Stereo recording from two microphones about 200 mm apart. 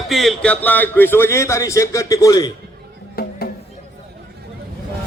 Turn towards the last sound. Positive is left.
turn(degrees=50)  # may be behind; listen again after turning